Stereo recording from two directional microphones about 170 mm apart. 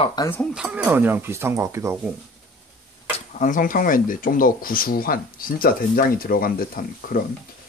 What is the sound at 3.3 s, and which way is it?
Speech, 50° left (ahead or behind).